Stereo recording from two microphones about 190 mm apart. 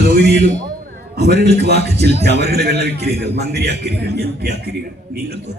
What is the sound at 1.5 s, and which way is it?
A man's voice, 60° right (ahead or behind).